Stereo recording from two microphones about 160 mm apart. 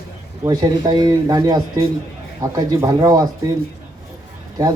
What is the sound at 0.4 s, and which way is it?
Speech, 25° right (ahead or behind).